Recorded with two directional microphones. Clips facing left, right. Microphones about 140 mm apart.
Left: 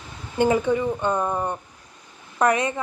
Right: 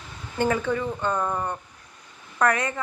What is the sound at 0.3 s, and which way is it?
Speech, 20° left (ahead or behind).